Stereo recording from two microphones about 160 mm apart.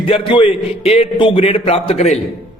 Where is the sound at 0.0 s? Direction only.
35° left (ahead or behind).